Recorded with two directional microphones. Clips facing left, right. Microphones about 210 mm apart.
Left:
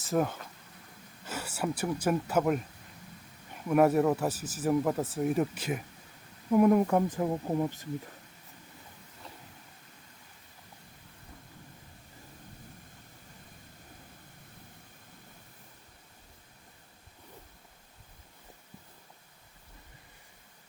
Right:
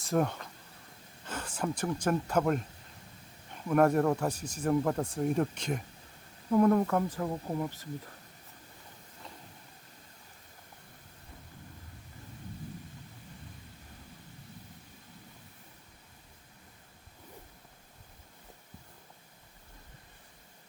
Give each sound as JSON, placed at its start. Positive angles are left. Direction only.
{"t": 0.0, "sound": "speech", "side_deg": 5}
{"t": 3.7, "sound": "speech", "side_deg": 5}